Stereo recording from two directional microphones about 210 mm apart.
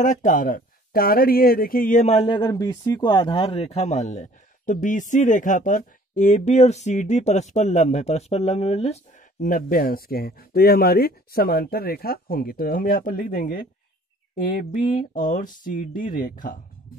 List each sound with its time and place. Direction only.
0.0 s speech: 40° left (ahead or behind)